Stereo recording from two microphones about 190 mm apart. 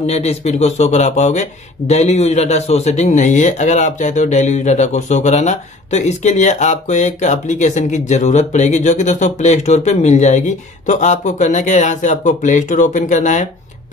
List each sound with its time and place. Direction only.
0.0 s speech: 35° left (ahead or behind)